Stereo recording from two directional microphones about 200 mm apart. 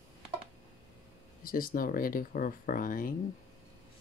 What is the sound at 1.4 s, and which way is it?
Speech, 45° left (ahead or behind).